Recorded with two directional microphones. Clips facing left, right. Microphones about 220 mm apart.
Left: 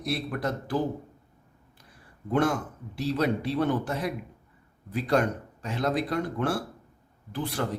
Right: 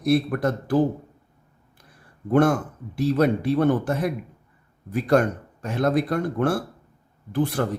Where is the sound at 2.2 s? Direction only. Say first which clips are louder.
Right 6 dB; 50° right (ahead or behind).